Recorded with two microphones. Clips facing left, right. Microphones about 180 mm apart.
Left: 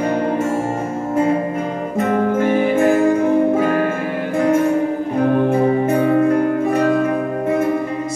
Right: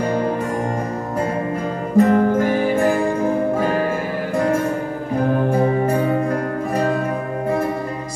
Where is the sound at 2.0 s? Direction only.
35° right (ahead or behind).